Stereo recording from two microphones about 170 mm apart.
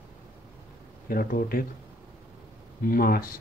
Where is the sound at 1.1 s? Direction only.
60° left (ahead or behind).